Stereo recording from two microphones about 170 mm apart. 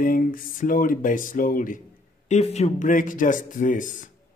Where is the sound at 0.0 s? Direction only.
55° left (ahead or behind).